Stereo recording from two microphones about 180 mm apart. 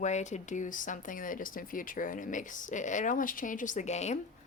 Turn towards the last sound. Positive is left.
turn(degrees=40)  # may be behind; listen again after turning